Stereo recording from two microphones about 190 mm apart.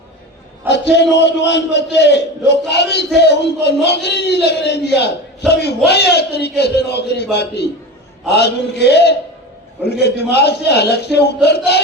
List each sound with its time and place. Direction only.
0.7 s a man's voice: 65° left (ahead or behind)